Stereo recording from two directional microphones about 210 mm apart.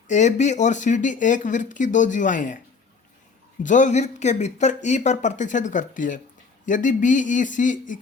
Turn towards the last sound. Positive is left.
turn(degrees=35)  # may be behind; listen again after turning